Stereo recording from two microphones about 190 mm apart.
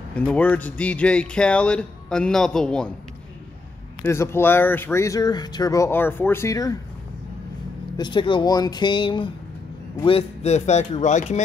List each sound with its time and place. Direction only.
0.1 s speech: 5° left (ahead or behind)
4.0 s speech: 15° left (ahead or behind)
8.0 s speech: 25° left (ahead or behind)